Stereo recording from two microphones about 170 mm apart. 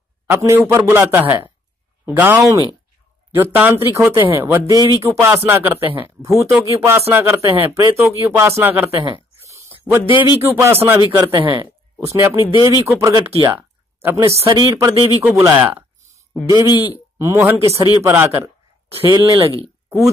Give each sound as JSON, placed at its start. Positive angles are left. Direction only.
{"t": 0.3, "sound": "speech", "side_deg": -15}
{"t": 9.4, "sound": "a sound", "side_deg": -15}
{"t": 10.0, "sound": "speech", "side_deg": 30}
{"t": 10.4, "sound": "speech", "side_deg": -15}
{"t": 13.2, "sound": "speech", "side_deg": -35}
{"t": 13.5, "sound": "a sound", "side_deg": -10}
{"t": 14.3, "sound": "speech", "side_deg": -25}
{"t": 15.2, "sound": "speech", "side_deg": -15}
{"t": 16.5, "sound": "speech", "side_deg": 25}
{"t": 17.2, "sound": "speech", "side_deg": -15}
{"t": 18.9, "sound": "speech", "side_deg": -30}